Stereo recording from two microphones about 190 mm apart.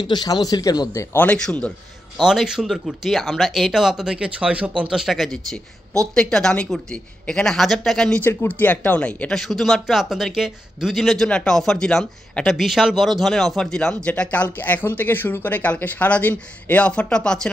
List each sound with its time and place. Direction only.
0.0 s a man's voice: 20° left (ahead or behind); by 17.5 s 5° left (ahead or behind)